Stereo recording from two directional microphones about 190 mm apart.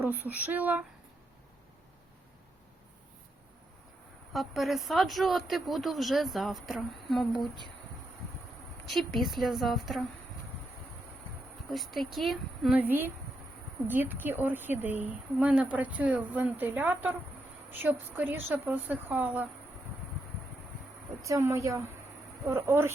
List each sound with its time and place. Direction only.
0.0 s a woman's voice: 10° right (ahead or behind)
4.3 s speech: centre (ahead or behind)
8.9 s speech: centre (ahead or behind)
11.7 s a woman's voice: centre (ahead or behind)
21.2 s a woman's voice: 15° right (ahead or behind)